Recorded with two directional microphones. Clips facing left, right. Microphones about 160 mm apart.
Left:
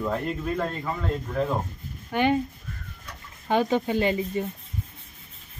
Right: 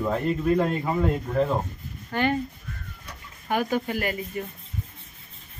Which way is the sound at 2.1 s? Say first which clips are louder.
Left 2 dB; 15° left (ahead or behind).